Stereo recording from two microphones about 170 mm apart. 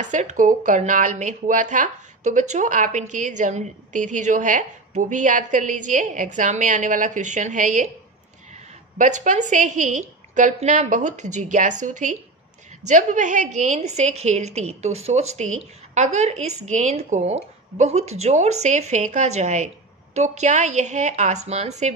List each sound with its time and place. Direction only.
0.0 s speech: 45° right (ahead or behind)
8.9 s a woman's voice: 45° right (ahead or behind)